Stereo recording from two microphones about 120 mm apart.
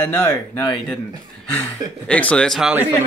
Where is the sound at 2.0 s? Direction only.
10° left (ahead or behind).